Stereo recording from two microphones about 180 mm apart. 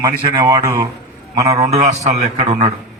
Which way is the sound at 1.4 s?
35° right (ahead or behind).